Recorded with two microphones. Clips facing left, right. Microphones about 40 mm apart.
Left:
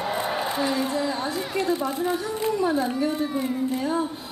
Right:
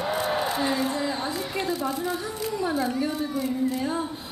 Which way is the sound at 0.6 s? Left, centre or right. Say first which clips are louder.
Left 1 dB; centre.